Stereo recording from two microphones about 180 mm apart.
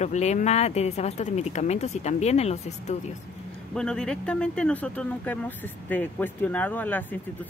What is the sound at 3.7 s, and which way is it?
Speech, 5° left (ahead or behind).